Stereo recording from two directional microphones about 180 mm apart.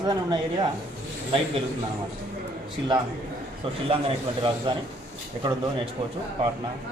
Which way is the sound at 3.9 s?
30° right (ahead or behind).